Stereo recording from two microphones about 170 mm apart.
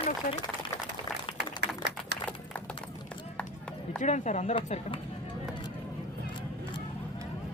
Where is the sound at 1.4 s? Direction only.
85° right.